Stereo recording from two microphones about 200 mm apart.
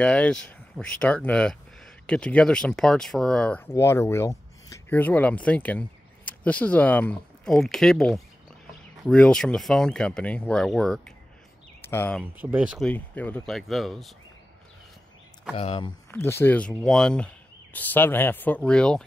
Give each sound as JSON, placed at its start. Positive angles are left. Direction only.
{"t": 0.0, "sound": "speech", "side_deg": 5}
{"t": 12.2, "sound": "speech", "side_deg": -10}
{"t": 12.9, "sound": "speech", "side_deg": 10}
{"t": 15.5, "sound": "speech", "side_deg": 30}
{"t": 16.1, "sound": "speech", "side_deg": 10}